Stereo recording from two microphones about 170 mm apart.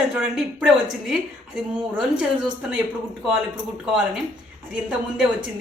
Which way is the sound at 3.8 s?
Centre (ahead or behind).